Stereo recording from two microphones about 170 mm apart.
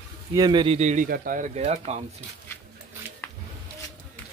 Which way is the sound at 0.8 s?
45° right (ahead or behind).